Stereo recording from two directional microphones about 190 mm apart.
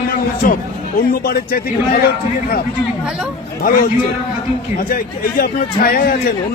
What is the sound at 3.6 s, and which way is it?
A man's voice, 45° left (ahead or behind).